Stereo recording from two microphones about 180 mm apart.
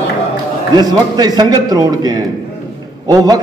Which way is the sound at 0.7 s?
20° right (ahead or behind).